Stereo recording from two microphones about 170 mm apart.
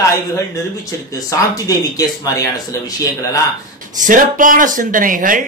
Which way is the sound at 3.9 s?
50° right (ahead or behind).